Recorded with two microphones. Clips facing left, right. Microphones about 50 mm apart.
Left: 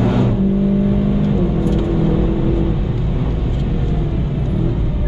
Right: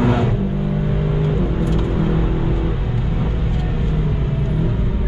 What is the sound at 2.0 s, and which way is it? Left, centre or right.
Vehicle, centre.